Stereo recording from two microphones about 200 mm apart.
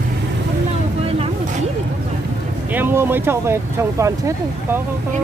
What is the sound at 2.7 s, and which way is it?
Speech, 10° right (ahead or behind).